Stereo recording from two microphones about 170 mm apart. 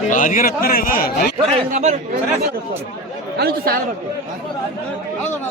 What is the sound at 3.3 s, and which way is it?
Speech, 65° right (ahead or behind).